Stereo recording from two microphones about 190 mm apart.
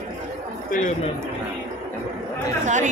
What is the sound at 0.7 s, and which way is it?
Speech, 45° left (ahead or behind).